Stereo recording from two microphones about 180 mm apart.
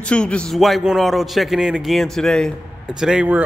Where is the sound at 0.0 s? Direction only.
5° left (ahead or behind).